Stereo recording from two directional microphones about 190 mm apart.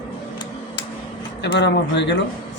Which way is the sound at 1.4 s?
65° left (ahead or behind).